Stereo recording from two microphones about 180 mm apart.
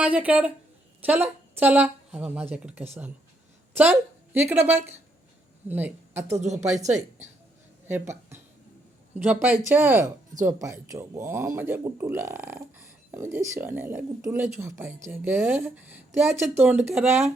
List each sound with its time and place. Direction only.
0.0 s a woman's voice: 10° right (ahead or behind)
6.4 s speech: 40° right (ahead or behind)
7.9 s speech: 15° right (ahead or behind)